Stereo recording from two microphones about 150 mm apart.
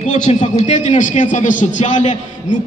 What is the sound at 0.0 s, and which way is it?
A man's voice, 50° left (ahead or behind).